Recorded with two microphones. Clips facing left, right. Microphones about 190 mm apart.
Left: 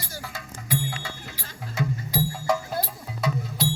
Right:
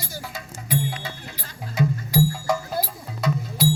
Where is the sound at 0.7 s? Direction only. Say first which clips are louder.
Right 3 dB; 20° right (ahead or behind).